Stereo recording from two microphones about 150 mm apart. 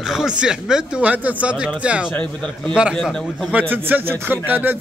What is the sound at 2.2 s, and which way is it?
Speech, 5° left (ahead or behind).